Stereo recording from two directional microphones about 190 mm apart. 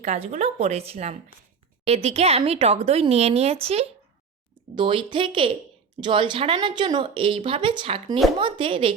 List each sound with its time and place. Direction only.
0.0 s a woman's voice: 35° right (ahead or behind)